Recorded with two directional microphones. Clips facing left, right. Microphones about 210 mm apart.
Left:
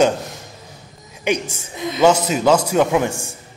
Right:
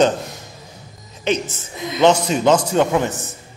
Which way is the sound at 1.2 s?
10° left (ahead or behind).